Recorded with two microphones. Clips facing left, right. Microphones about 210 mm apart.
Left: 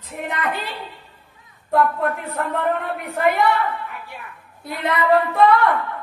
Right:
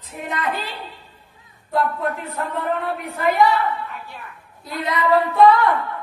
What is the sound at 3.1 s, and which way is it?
A woman's voice, 60° left (ahead or behind).